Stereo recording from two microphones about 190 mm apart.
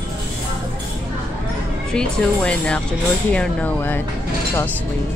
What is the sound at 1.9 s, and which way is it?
Music, 5° left (ahead or behind).